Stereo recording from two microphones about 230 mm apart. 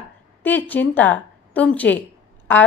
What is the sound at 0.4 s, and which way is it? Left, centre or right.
A woman's voice, centre.